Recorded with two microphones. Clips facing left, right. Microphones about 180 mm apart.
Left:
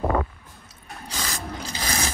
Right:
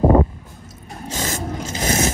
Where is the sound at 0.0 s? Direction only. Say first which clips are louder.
Right 9 dB; 25° right (ahead or behind).